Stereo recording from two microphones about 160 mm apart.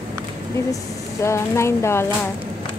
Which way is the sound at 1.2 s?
15° left (ahead or behind).